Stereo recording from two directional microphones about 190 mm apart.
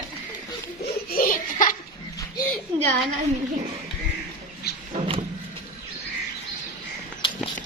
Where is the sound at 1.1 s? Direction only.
45° left (ahead or behind).